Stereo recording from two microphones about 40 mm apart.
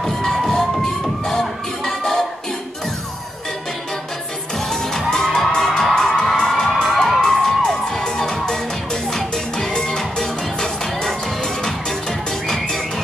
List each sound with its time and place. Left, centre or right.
0.0 s music: centre
4.9 s music: centre